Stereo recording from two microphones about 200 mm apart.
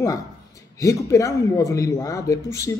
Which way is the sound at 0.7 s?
15° left (ahead or behind).